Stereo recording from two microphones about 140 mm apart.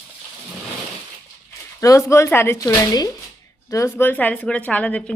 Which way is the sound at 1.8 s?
25° left (ahead or behind).